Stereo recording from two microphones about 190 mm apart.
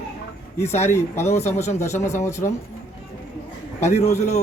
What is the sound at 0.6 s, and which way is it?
Speech, 35° left (ahead or behind).